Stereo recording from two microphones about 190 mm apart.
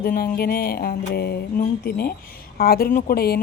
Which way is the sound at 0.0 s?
50° left (ahead or behind).